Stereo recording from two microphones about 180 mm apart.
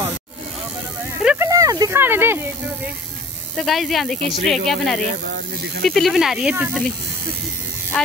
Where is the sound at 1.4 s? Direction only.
20° right (ahead or behind).